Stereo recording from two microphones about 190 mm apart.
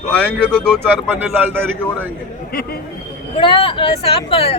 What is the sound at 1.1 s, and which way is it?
Speech, 10° right (ahead or behind).